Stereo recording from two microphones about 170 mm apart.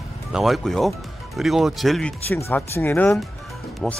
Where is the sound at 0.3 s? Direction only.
Centre (ahead or behind).